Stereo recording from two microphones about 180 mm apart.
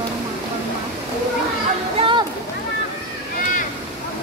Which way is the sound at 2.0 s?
25° right (ahead or behind).